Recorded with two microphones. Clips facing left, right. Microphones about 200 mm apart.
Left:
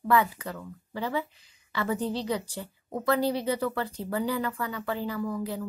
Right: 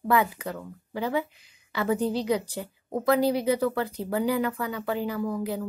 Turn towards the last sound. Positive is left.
turn(degrees=-15)  # may be behind; listen again after turning